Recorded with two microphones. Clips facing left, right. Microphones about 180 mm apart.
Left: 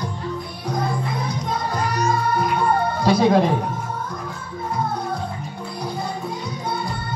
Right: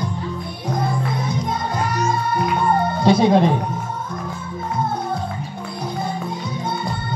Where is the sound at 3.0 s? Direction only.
25° right (ahead or behind).